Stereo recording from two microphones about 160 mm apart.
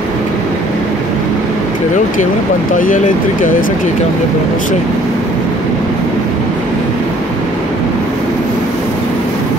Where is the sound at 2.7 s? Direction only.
55° left (ahead or behind).